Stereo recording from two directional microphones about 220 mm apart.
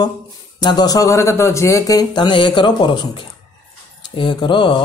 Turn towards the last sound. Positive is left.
turn(degrees=20)  # may be behind; listen again after turning